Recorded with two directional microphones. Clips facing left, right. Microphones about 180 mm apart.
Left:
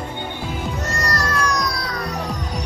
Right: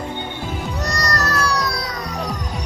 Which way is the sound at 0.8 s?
40° right (ahead or behind).